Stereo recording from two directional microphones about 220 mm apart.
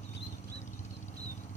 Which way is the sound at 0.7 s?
30° left (ahead or behind).